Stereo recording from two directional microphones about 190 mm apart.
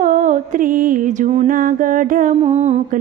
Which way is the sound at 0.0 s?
45° right (ahead or behind).